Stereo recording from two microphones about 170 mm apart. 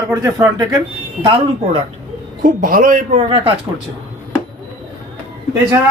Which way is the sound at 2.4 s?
55° right (ahead or behind).